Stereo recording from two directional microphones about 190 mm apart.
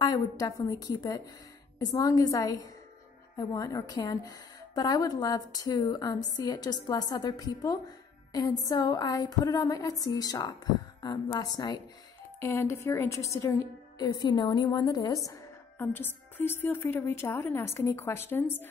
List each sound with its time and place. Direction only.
0.0 s a woman's voice: 20° left (ahead or behind)